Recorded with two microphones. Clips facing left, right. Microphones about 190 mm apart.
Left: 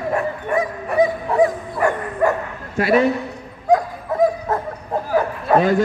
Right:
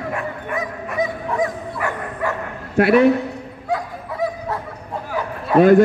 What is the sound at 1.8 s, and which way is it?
Dog, 45° left (ahead or behind).